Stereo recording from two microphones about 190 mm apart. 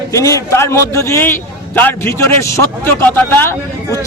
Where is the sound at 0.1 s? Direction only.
15° left (ahead or behind).